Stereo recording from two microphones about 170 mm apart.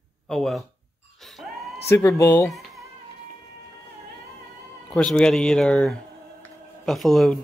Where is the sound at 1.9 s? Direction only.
15° left (ahead or behind).